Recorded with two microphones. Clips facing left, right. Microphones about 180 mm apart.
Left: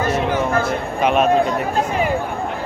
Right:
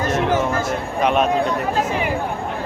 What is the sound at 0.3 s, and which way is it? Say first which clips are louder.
Speech: left 1 dB; 45° right (ahead or behind).